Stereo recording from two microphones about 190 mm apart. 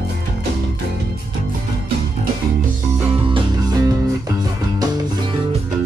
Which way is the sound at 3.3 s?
20° right (ahead or behind).